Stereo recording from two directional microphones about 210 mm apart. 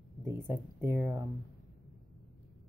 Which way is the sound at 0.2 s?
10° right (ahead or behind).